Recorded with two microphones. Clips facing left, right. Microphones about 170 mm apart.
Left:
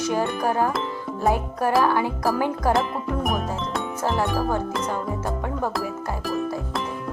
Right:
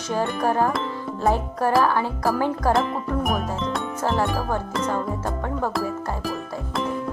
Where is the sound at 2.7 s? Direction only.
Centre (ahead or behind).